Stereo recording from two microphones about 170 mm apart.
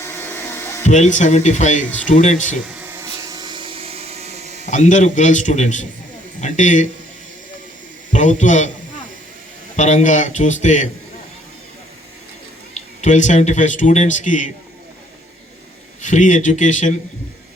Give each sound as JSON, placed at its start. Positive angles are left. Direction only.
{"t": 0.0, "sound": "a sound", "side_deg": 15}
{"t": 0.9, "sound": "speech", "side_deg": 45}
{"t": 3.0, "sound": "a sound", "side_deg": -25}
{"t": 4.6, "sound": "speech", "side_deg": 45}
{"t": 8.1, "sound": "speech", "side_deg": 45}
{"t": 9.7, "sound": "speech", "side_deg": 45}
{"t": 12.7, "sound": "speech", "side_deg": 45}
{"t": 16.0, "sound": "speech", "side_deg": 50}